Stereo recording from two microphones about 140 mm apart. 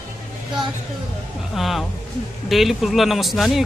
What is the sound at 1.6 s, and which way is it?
Speech, centre (ahead or behind).